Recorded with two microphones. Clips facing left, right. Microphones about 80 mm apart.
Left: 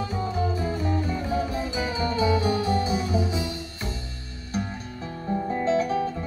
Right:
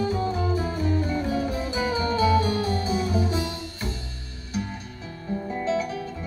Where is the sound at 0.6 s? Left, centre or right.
Left.